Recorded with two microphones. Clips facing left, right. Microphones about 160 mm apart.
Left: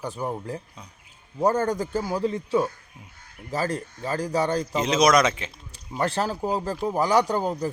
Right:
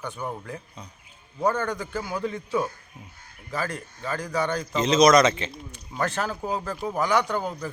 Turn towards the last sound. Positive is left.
turn(degrees=35)  # may be behind; listen again after turning